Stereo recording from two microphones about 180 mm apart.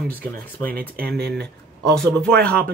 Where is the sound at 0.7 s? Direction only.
55° right (ahead or behind).